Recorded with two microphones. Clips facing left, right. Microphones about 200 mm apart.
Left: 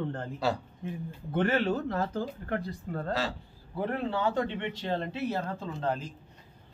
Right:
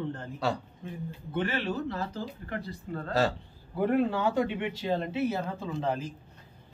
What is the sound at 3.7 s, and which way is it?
Speech, 10° right (ahead or behind).